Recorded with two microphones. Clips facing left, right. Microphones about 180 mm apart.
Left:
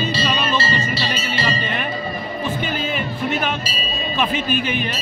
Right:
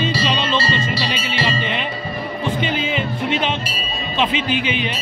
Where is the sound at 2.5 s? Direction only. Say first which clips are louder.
Right 2 dB; 20° right (ahead or behind).